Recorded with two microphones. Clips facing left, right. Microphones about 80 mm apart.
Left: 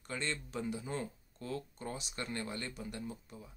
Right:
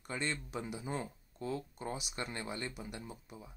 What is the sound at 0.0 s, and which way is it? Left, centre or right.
Speech, centre.